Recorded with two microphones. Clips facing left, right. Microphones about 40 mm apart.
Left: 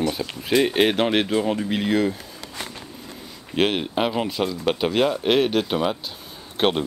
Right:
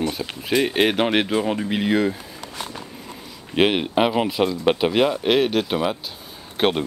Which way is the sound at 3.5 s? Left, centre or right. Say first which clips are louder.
Right 3 dB; centre.